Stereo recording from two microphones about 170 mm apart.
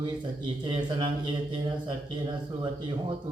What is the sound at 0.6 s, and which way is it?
Speech, 25° right (ahead or behind).